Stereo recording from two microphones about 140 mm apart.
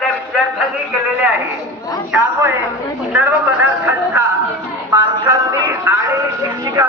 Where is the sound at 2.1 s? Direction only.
10° right (ahead or behind).